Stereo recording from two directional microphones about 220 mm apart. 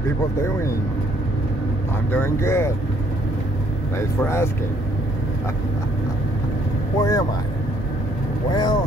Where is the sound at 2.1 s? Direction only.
10° left (ahead or behind).